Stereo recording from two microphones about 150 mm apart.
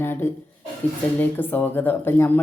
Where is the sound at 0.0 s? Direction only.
15° left (ahead or behind).